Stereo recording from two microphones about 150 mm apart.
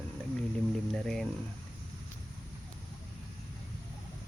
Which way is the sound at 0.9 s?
5° left (ahead or behind).